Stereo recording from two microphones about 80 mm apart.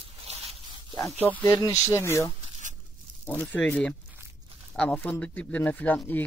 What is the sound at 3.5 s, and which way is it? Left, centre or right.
Speech, left.